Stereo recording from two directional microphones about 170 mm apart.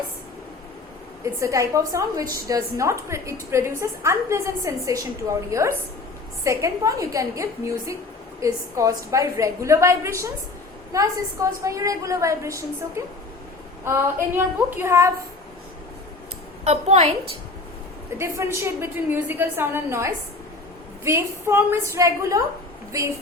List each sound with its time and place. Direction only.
1.2 s a woman's voice: 20° right (ahead or behind)
16.6 s a woman's voice: 40° right (ahead or behind)
18.2 s a woman's voice: 15° right (ahead or behind)